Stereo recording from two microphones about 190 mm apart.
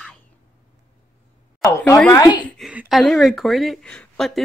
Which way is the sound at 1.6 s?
15° left (ahead or behind).